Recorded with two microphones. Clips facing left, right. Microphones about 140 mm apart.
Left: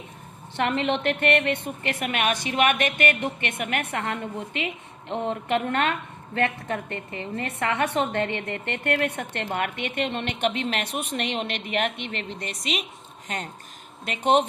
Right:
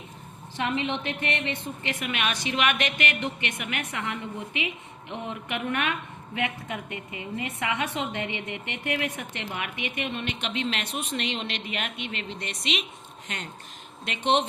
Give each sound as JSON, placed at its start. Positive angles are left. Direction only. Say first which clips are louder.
{"t": 0.5, "sound": "a woman's voice", "louder": "left 4 dB", "side_deg": 65}
{"t": 9.9, "sound": "a woman's voice", "louder": "left 4 dB", "side_deg": 65}
{"t": 12.0, "sound": "speech", "louder": "left 2 dB", "side_deg": -15}
{"t": 12.4, "sound": "a woman's voice", "louder": "even", "side_deg": 40}